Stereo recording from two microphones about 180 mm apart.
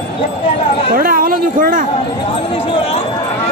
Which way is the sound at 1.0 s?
50° right (ahead or behind).